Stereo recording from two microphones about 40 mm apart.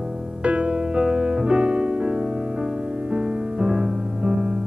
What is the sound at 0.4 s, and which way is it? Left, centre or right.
Music, right.